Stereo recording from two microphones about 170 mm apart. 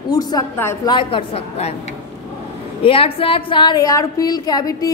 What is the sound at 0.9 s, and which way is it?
Speech, 30° left (ahead or behind).